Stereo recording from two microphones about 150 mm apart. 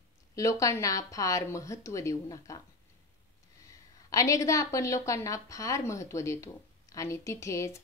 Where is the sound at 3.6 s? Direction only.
20° left (ahead or behind).